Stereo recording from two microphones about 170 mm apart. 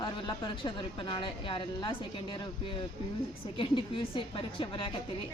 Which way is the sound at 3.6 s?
30° left (ahead or behind).